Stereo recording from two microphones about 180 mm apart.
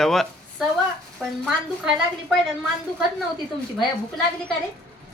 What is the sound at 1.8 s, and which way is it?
Speech, centre (ahead or behind).